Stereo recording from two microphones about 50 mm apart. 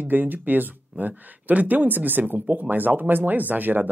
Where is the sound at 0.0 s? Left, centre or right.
Right.